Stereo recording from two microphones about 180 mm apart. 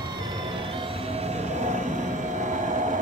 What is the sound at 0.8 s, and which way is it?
Music, 30° right (ahead or behind).